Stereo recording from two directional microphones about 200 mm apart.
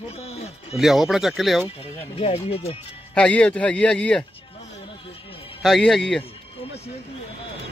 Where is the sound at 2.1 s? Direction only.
30° left (ahead or behind).